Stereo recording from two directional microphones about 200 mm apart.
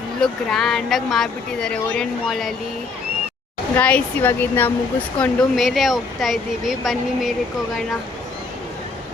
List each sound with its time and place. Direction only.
0.2 s speech: centre (ahead or behind)
3.8 s speech: 5° left (ahead or behind)